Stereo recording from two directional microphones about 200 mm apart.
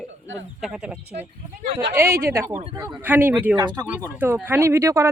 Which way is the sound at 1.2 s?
35° right (ahead or behind).